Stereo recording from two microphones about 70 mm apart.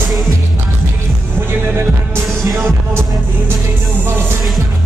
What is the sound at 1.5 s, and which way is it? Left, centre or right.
Heart sounds, right.